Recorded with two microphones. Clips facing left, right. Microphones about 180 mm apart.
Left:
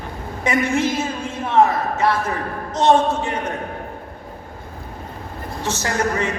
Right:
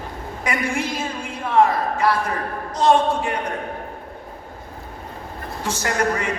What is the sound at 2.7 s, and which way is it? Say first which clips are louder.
Speech: left 1 dB; 25° left (ahead or behind).